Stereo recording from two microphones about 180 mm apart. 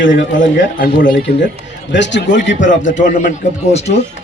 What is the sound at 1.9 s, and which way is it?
Speech, 80° left.